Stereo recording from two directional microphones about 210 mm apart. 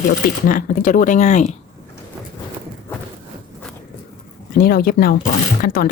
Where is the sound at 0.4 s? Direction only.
40° left (ahead or behind).